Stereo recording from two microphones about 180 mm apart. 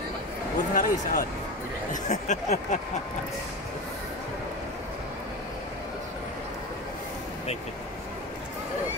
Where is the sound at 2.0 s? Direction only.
40° left (ahead or behind).